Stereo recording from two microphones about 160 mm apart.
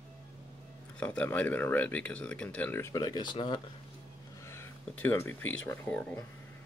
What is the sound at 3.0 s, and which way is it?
Speech, 25° left (ahead or behind).